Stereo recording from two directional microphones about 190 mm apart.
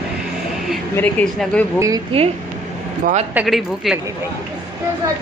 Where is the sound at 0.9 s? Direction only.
5° left (ahead or behind).